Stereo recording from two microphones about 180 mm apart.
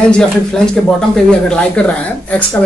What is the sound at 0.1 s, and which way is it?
Speech, 5° left (ahead or behind).